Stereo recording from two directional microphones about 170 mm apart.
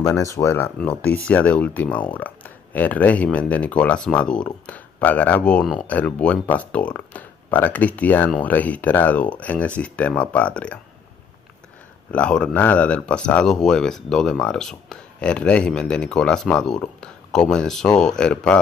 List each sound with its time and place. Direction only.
0.0 s speech: 20° left (ahead or behind)
12.1 s speech: 5° left (ahead or behind)